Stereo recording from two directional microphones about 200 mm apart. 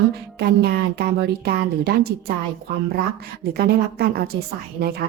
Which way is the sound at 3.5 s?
50° right (ahead or behind).